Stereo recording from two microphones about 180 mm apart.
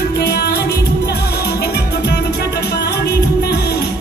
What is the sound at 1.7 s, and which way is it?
Music, 65° left (ahead or behind).